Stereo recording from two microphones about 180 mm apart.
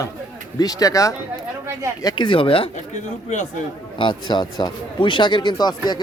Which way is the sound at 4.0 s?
25° left (ahead or behind).